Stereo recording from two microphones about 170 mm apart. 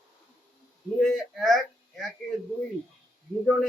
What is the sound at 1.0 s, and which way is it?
Speech, centre (ahead or behind).